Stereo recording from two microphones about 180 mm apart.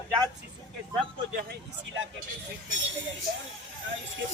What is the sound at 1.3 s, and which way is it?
Speech, 50° right (ahead or behind).